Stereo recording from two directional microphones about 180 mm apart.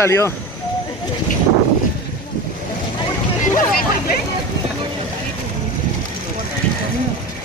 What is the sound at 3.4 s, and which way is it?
Hubbub, 50° left (ahead or behind).